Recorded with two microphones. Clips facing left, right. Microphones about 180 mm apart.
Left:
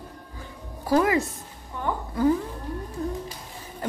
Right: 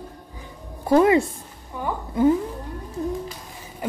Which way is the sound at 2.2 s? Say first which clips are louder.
Right 4 dB; 20° right (ahead or behind).